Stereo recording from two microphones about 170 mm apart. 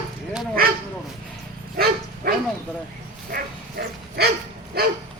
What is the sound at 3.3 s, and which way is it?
Dog, 65° right (ahead or behind).